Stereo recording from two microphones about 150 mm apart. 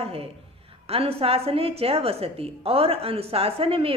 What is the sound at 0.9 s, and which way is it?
Speech, 40° right (ahead or behind).